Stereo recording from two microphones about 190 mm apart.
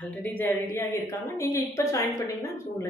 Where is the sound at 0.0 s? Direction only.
10° left (ahead or behind).